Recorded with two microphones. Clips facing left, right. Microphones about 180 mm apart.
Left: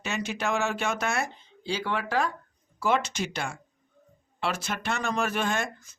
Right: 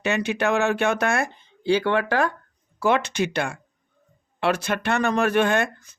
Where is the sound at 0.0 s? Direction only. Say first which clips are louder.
Right 8 dB; 60° right (ahead or behind).